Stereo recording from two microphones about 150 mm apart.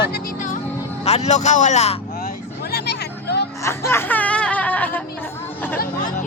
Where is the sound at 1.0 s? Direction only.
45° left (ahead or behind).